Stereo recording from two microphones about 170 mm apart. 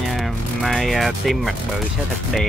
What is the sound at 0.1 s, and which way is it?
Music, centre (ahead or behind).